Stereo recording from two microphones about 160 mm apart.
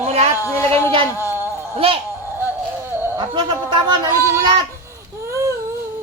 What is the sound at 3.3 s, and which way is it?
Speech, 30° right (ahead or behind).